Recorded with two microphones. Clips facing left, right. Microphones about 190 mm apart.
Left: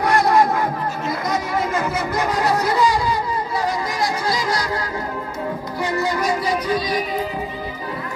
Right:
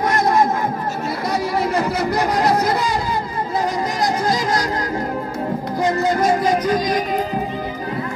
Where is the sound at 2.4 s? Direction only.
45° right (ahead or behind).